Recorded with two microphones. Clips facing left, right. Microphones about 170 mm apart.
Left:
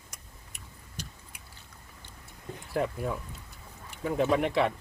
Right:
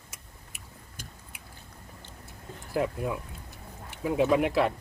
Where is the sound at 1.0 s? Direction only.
50° right (ahead or behind).